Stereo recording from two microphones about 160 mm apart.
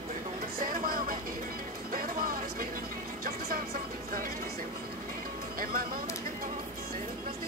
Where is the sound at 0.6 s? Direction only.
60° right (ahead or behind).